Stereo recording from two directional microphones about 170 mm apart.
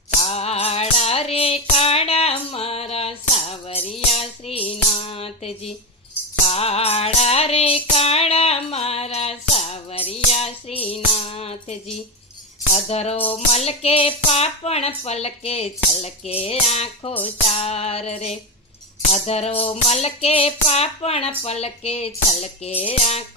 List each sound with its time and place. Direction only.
0.2 s music: 35° left (ahead or behind)
12.7 s speech: 40° left (ahead or behind)